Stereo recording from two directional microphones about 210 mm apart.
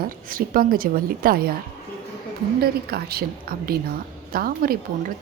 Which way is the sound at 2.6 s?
45° right (ahead or behind).